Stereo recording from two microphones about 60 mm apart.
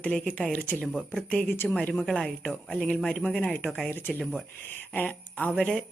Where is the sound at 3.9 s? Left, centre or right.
Left.